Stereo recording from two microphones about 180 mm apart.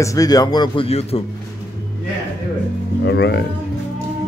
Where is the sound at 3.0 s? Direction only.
70° left (ahead or behind).